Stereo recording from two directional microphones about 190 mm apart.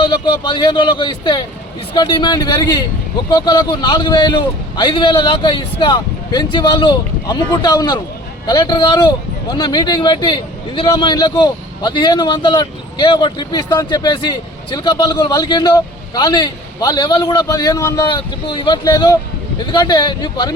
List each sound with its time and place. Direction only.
0.0 s speech: 25° left (ahead or behind)